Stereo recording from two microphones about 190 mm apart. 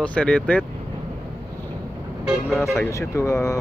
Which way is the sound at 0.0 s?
5° left (ahead or behind).